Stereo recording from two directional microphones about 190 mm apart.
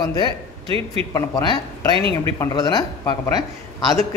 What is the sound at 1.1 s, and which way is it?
Speech, 20° left (ahead or behind).